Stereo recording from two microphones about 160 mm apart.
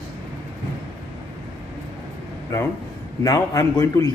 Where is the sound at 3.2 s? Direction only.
20° left (ahead or behind).